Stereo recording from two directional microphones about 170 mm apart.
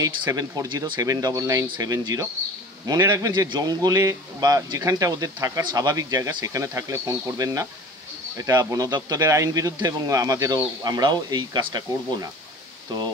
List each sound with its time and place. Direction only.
0.0 s speech: 20° right (ahead or behind)